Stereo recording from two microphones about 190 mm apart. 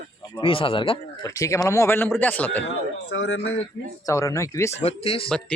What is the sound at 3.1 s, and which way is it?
Speech, 90° left.